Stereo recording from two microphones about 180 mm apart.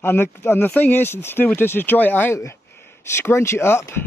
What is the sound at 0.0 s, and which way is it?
Speech, 10° left (ahead or behind).